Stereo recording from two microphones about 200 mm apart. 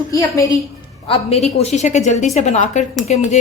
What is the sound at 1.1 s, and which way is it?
Speech, 30° left (ahead or behind).